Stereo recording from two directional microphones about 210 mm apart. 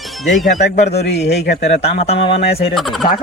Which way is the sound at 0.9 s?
50° left (ahead or behind).